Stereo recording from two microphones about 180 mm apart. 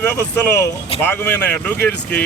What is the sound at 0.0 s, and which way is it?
A man's voice, 10° left (ahead or behind).